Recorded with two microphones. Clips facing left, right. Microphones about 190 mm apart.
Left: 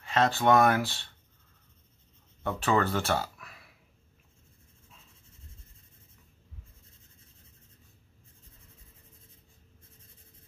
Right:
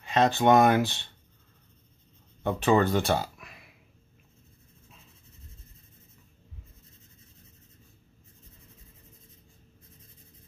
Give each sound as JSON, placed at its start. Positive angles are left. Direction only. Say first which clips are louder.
{"t": 0.0, "sound": "speech", "louder": "right 3 dB", "side_deg": -15}
{"t": 2.4, "sound": "speech", "louder": "right 4 dB", "side_deg": -20}